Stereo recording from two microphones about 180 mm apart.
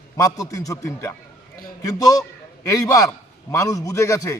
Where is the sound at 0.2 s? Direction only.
20° left (ahead or behind).